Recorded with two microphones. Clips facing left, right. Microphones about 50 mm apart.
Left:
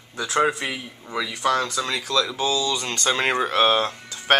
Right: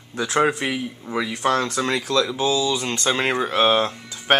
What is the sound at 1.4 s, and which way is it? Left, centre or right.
Speech, right.